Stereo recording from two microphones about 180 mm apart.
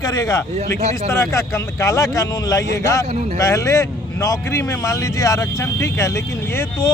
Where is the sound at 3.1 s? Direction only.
40° right (ahead or behind).